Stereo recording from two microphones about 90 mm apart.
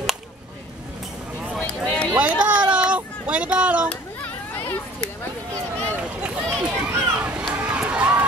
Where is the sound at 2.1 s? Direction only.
15° right (ahead or behind).